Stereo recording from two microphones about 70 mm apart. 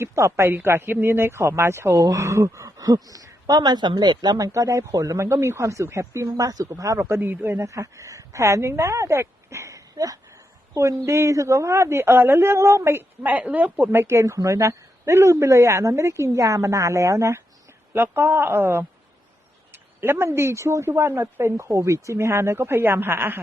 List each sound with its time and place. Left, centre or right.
0.0 s a woman's voice: right
0.5 s speech: right
2.0 s speech: right
7.0 s speech: right
7.6 s a woman's voice: right
10.8 s speech: right
13.9 s speech: right
17.9 s speech: right